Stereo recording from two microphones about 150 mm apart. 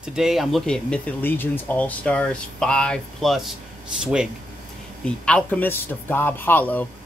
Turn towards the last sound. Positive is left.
turn(degrees=10)  # may be behind; listen again after turning